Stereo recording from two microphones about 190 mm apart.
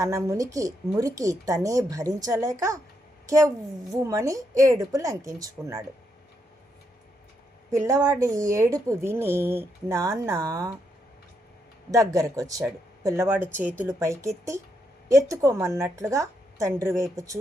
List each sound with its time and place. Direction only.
0.0 s a woman's voice: 15° right (ahead or behind)
7.7 s speech: 15° right (ahead or behind)
11.9 s speech: 15° right (ahead or behind)